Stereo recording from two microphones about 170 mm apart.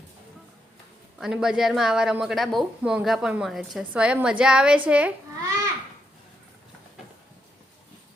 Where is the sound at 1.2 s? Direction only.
5° right (ahead or behind).